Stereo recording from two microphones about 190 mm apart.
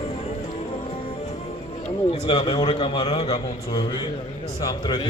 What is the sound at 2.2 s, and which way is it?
A man's voice, 30° left (ahead or behind).